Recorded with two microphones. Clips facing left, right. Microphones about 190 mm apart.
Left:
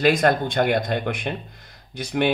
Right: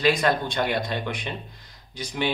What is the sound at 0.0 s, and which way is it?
Speech, 50° left (ahead or behind).